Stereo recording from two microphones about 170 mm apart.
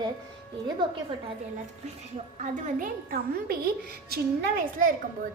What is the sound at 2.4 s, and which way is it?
A woman's voice, 50° right (ahead or behind).